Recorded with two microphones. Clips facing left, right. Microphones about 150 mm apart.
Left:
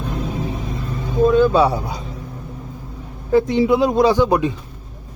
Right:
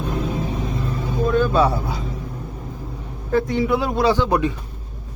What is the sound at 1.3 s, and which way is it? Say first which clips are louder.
Speech: left 2 dB; 15° left (ahead or behind).